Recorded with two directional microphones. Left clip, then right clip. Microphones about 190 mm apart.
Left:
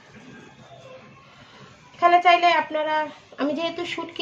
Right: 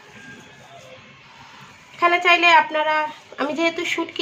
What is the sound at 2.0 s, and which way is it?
A woman's voice, 30° right (ahead or behind).